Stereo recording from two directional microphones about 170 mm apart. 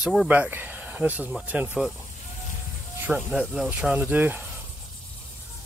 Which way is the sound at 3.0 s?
5° right (ahead or behind).